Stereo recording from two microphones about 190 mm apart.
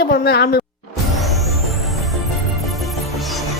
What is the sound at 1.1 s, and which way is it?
Music, centre (ahead or behind).